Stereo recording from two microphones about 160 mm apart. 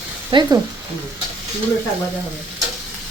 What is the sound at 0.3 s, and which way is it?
Speech, 30° right (ahead or behind).